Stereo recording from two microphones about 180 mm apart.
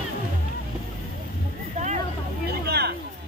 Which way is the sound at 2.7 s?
65° right (ahead or behind).